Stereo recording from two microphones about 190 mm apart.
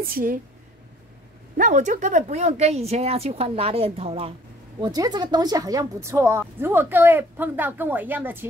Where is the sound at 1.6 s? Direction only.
40° right (ahead or behind).